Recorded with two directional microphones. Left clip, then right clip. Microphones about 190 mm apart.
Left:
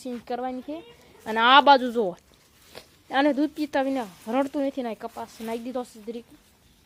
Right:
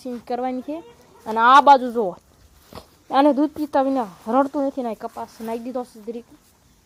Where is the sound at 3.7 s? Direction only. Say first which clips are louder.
Right 8 dB; 15° right (ahead or behind).